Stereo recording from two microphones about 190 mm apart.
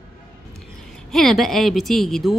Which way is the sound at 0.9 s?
Centre (ahead or behind).